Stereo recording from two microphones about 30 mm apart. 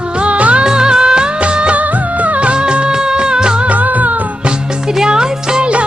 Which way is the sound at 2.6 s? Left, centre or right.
Right.